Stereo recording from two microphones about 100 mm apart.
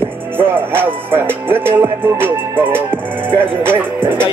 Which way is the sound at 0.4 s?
20° right (ahead or behind).